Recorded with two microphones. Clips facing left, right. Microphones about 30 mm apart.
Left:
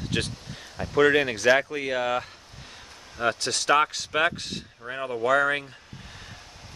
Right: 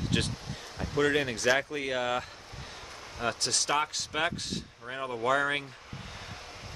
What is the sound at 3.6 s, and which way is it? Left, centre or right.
Speech, left.